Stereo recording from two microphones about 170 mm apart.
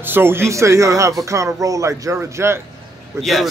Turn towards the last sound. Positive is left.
turn(degrees=0)  # may be behind; listen again after turning